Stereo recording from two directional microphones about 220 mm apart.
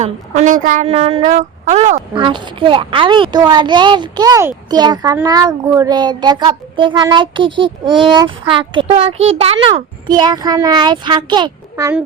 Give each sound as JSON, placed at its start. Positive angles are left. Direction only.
{"t": 0.0, "sound": "a woman's voice", "side_deg": -35}